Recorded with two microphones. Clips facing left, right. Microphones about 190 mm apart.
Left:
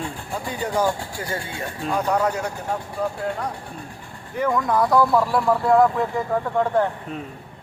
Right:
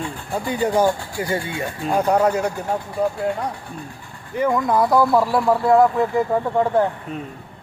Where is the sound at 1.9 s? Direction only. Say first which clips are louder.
Right 4 dB; 35° right (ahead or behind).